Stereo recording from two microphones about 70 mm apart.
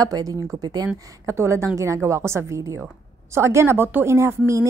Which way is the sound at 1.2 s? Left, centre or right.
Right.